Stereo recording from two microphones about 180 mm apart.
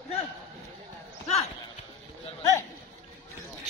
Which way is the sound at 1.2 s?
35° left (ahead or behind).